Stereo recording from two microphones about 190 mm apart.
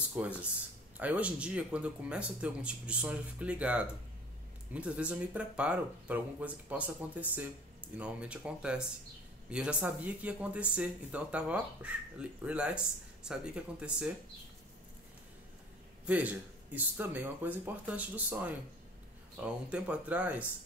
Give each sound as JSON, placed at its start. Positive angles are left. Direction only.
{"t": 0.1, "sound": "speech", "side_deg": -5}
{"t": 16.1, "sound": "speech", "side_deg": -10}